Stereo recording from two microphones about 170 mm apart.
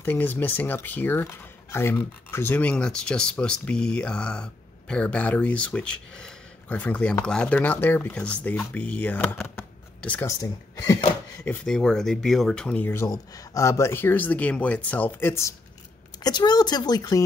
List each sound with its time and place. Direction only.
0.0 s speech: 10° left (ahead or behind)
11.4 s speech: 5° left (ahead or behind); by 17.2 s 20° left (ahead or behind)